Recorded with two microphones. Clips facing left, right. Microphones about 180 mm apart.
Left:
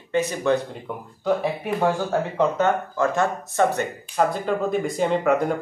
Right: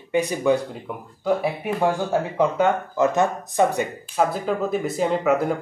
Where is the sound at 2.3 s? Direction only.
15° right (ahead or behind).